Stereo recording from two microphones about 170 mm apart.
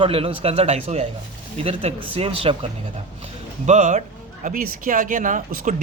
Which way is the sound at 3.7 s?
45° right (ahead or behind).